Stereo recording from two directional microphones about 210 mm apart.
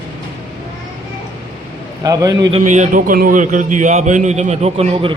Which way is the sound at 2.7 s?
35° right (ahead or behind).